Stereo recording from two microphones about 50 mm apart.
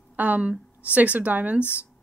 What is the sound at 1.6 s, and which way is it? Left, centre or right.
Speech, left.